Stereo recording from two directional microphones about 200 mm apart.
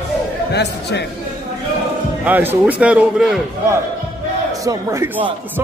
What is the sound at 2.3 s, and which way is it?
Speech, 10° right (ahead or behind).